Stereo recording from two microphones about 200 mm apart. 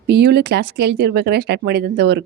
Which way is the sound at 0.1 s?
55° right (ahead or behind).